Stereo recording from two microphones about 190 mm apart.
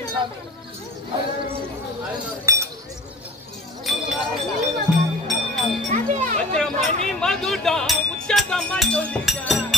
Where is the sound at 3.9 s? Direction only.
Centre (ahead or behind).